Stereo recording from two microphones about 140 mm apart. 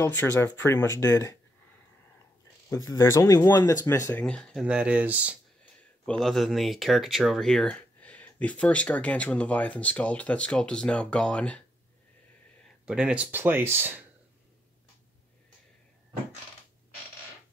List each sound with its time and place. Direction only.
0.0 s speech: 15° left (ahead or behind)
2.7 s speech: 20° left (ahead or behind)
4.2 s speech: 5° left (ahead or behind)
4.6 s speech: 10° right (ahead or behind)
6.0 s speech: 5° left (ahead or behind)
12.8 s speech: 5° right (ahead or behind)